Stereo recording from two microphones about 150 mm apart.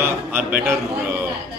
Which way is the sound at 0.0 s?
15° right (ahead or behind).